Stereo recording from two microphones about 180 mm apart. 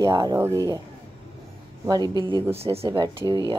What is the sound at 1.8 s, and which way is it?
Speech, 20° right (ahead or behind).